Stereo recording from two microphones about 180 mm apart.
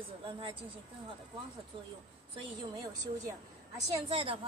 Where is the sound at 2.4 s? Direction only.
20° right (ahead or behind).